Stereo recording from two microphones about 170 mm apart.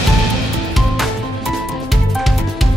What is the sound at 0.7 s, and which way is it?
Music, centre (ahead or behind).